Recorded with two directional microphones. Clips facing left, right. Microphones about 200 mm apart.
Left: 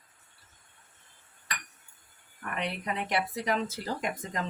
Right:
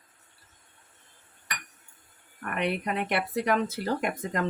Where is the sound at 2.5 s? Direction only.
60° right (ahead or behind).